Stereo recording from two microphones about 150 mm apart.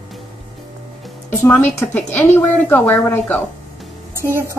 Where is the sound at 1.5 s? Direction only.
15° left (ahead or behind).